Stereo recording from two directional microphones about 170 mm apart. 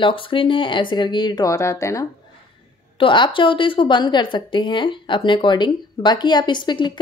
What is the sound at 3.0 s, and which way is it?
A woman's voice, 30° left (ahead or behind).